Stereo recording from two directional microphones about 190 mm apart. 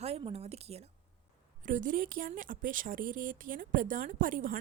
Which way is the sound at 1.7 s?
45° right (ahead or behind).